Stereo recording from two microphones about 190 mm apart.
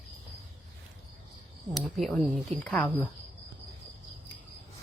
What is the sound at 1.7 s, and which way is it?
Speech, centre (ahead or behind).